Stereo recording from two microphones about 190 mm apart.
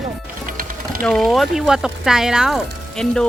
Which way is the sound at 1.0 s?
5° left (ahead or behind).